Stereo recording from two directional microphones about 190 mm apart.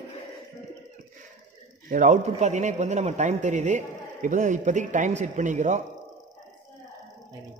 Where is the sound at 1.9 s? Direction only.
40° right (ahead or behind).